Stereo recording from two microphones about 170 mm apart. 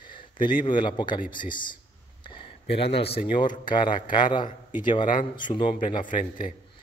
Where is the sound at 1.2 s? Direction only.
55° left (ahead or behind).